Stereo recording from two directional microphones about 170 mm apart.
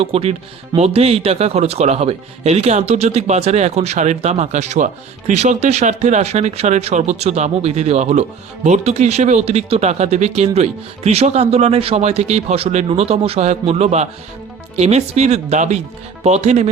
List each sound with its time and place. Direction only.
0.0 s speech: 35° right (ahead or behind)